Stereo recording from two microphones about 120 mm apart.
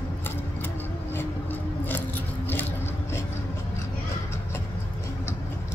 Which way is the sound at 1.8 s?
15° left (ahead or behind).